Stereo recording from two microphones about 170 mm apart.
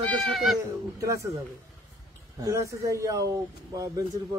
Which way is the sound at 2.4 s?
20° right (ahead or behind).